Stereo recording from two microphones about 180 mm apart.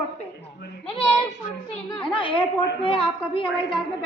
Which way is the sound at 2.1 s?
30° left (ahead or behind).